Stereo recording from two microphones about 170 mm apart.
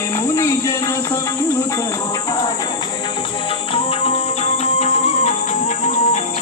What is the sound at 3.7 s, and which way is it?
Music, 35° left (ahead or behind).